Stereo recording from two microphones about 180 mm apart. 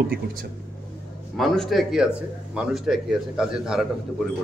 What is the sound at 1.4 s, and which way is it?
A man's voice, centre (ahead or behind).